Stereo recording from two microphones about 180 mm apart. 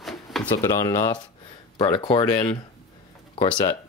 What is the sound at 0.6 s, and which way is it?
Speech, 20° left (ahead or behind).